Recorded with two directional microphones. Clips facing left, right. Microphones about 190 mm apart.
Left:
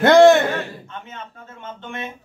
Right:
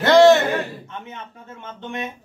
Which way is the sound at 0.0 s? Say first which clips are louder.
Left 1 dB; 50° left (ahead or behind).